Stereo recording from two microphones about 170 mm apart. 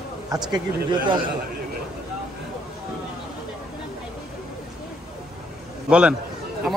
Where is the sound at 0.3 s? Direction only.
25° right (ahead or behind).